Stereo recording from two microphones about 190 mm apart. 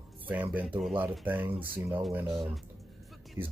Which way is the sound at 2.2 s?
25° right (ahead or behind).